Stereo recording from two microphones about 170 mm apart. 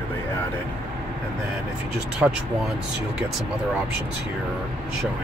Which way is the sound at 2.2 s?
5° right (ahead or behind).